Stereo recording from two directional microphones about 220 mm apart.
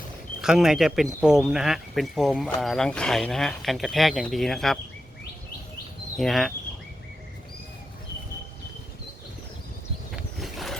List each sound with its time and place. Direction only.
0.4 s speech: 5° right (ahead or behind)
6.1 s speech: centre (ahead or behind)
10.2 s a sound: centre (ahead or behind)